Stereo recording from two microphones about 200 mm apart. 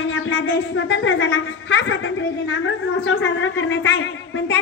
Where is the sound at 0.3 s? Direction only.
70° left (ahead or behind).